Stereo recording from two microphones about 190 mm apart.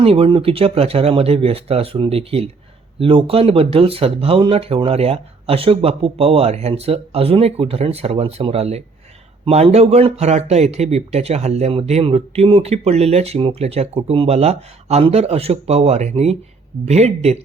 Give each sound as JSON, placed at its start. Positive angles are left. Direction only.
{"t": 0.0, "sound": "a man's voice", "side_deg": -30}